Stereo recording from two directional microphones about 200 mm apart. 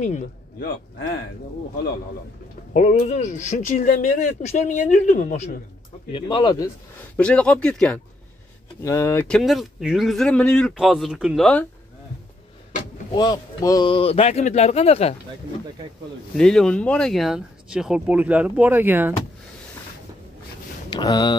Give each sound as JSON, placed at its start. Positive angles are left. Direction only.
{"t": 0.0, "sound": "a man's voice", "side_deg": 40}
{"t": 2.7, "sound": "speech", "side_deg": 40}
{"t": 6.1, "sound": "speech", "side_deg": 20}
{"t": 7.2, "sound": "speech", "side_deg": 5}
{"t": 13.1, "sound": "speech", "side_deg": 20}
{"t": 16.3, "sound": "speech", "side_deg": 5}
{"t": 20.9, "sound": "speech", "side_deg": 20}